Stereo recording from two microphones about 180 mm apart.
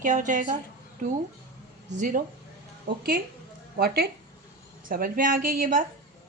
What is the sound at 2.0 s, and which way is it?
A woman's voice, 45° right (ahead or behind).